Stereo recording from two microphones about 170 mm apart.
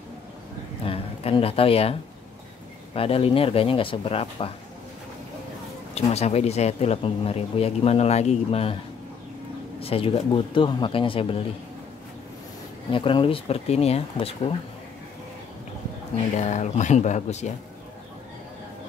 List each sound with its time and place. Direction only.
0.8 s speech: 35° left (ahead or behind)
5.9 s speech: 40° left (ahead or behind)
9.8 s speech: 35° left (ahead or behind)
12.9 s speech: 30° left (ahead or behind)
16.3 s speech: 45° left (ahead or behind)